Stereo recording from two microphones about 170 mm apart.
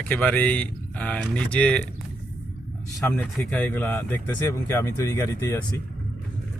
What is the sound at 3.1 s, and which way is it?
Speech, 10° left (ahead or behind).